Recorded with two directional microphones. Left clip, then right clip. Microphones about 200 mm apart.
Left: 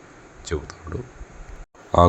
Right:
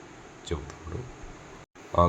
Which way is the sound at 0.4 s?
30° left (ahead or behind).